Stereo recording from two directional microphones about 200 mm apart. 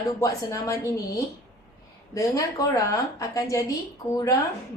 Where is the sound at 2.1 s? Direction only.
15° left (ahead or behind).